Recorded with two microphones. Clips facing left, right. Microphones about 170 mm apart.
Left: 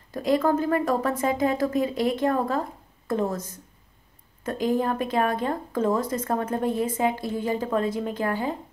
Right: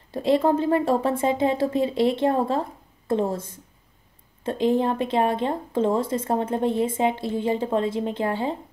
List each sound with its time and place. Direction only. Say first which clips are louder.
0.1 s speech: right 2 dB; 25° right (ahead or behind)